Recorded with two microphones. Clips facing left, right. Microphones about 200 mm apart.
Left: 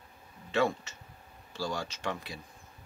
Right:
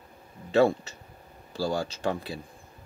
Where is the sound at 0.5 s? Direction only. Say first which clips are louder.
Right 7 dB; 35° right (ahead or behind).